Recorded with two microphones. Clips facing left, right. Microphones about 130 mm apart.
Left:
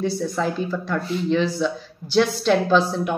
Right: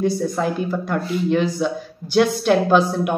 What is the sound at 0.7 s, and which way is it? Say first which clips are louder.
Speech: right 2 dB; 50° right (ahead or behind).